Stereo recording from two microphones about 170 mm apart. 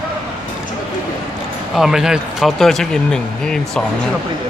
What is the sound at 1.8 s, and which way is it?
Speech, 5° right (ahead or behind).